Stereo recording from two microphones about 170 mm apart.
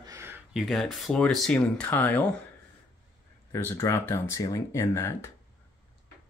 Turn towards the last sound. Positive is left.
turn(degrees=15)  # may be behind; listen again after turning